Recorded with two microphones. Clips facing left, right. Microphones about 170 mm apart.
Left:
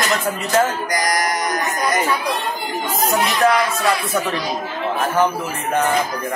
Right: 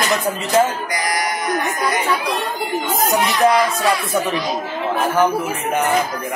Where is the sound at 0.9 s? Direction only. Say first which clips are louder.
Left 4 dB; 40° left (ahead or behind).